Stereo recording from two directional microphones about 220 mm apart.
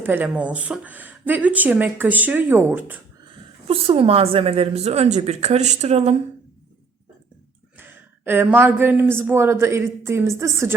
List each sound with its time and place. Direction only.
0.0 s speech: 10° right (ahead or behind)
3.7 s a woman's voice: 25° right (ahead or behind)
7.8 s speech: 10° right (ahead or behind)